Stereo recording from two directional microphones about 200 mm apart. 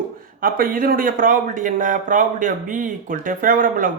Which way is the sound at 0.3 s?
45° right (ahead or behind).